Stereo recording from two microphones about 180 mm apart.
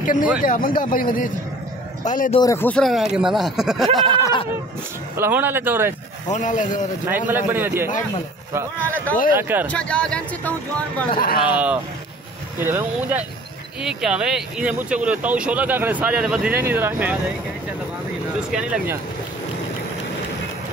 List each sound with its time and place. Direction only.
0.0 s speech: 50° left (ahead or behind)
2.4 s speech: 10° left (ahead or behind)
4.2 s a sound: 25° left (ahead or behind)
5.1 s speech: 10° right (ahead or behind)
6.3 s speech: 45° left (ahead or behind)
7.1 s speech: 10° right (ahead or behind)
8.7 s a man's voice: 10° left (ahead or behind)
9.3 s speech: 10° right (ahead or behind)
9.7 s speech: 5° left (ahead or behind)
11.4 s speech: 10° right (ahead or behind)
18.5 s speech: 5° right (ahead or behind)